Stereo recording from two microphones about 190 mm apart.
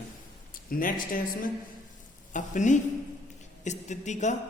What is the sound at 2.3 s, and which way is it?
A man's voice, 40° left (ahead or behind).